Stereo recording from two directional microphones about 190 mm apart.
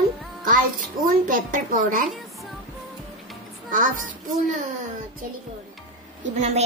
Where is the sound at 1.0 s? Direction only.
45° right (ahead or behind).